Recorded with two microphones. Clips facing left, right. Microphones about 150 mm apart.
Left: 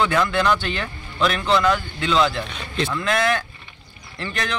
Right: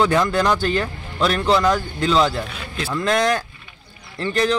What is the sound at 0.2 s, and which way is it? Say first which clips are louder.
Speech: right 2 dB; 35° right (ahead or behind).